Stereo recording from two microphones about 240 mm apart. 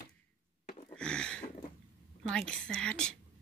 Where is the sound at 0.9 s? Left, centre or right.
Centre.